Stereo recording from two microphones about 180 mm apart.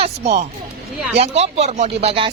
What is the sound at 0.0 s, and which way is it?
Speech, 40° right (ahead or behind).